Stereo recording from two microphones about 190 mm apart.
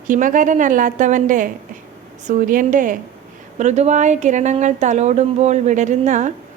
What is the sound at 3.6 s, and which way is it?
A woman's voice, 35° right (ahead or behind).